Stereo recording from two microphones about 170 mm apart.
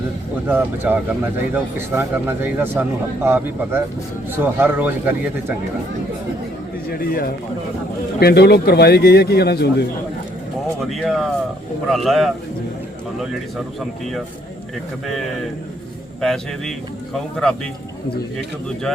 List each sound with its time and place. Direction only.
0.4 s speech: 10° right (ahead or behind)
6.9 s a man's voice: 60° left (ahead or behind)
10.8 s speech: centre (ahead or behind)
15.0 s speech: centre (ahead or behind)